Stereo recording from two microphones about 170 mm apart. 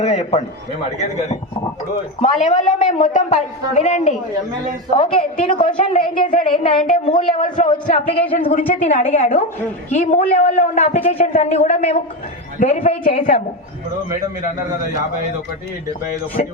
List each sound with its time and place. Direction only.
0.0 s a woman's voice: 40° left (ahead or behind)
2.2 s a woman's voice: 45° left (ahead or behind)
4.9 s a woman's voice: 30° left (ahead or behind)